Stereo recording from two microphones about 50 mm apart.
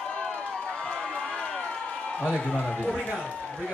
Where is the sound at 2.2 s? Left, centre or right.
Centre.